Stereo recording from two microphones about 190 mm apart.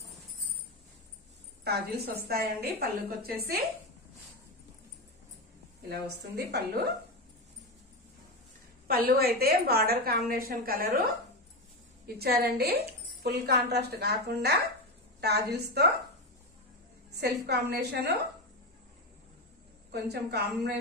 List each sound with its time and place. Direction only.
1.6 s a woman's voice: 55° right (ahead or behind)
5.9 s speech: 55° right (ahead or behind)
8.8 s a woman's voice: 55° right (ahead or behind)
12.2 s speech: 55° right (ahead or behind)
17.2 s speech: 60° right (ahead or behind)
19.9 s speech: 60° right (ahead or behind)